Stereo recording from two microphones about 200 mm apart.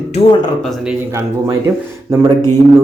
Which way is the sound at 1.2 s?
15° right (ahead or behind).